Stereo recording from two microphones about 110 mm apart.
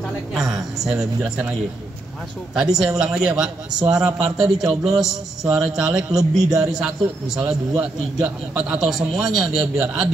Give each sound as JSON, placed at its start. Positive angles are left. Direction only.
{"t": 0.3, "sound": "a man's voice", "side_deg": 0}
{"t": 2.5, "sound": "a man's voice", "side_deg": -5}